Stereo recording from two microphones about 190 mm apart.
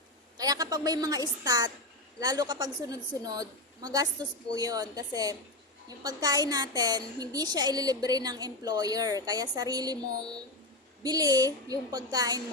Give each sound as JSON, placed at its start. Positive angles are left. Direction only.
{"t": 0.3, "sound": "a woman's voice", "side_deg": -20}
{"t": 11.0, "sound": "a woman's voice", "side_deg": -20}